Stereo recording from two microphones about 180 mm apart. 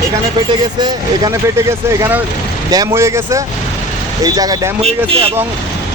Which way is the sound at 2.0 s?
10° right (ahead or behind).